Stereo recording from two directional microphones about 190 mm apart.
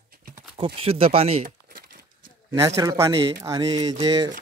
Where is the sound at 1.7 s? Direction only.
50° right (ahead or behind).